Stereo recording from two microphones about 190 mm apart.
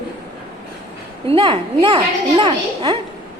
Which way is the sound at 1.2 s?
30° right (ahead or behind).